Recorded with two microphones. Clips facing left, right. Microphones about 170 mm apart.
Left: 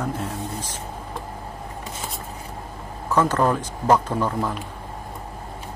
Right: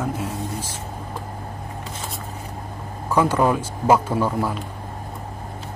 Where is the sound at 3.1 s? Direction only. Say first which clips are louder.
Right 1 dB; 10° right (ahead or behind).